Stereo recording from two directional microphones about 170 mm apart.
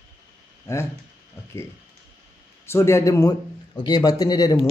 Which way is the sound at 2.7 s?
15° left (ahead or behind).